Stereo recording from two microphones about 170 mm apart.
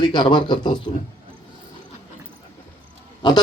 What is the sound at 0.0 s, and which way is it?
Speech, 25° left (ahead or behind).